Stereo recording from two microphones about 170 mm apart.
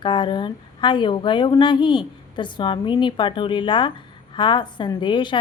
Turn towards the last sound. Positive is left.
turn(degrees=30)  # may be behind; listen again after turning